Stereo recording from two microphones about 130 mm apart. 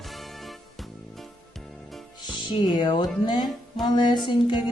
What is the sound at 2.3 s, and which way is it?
Speech, 35° left (ahead or behind).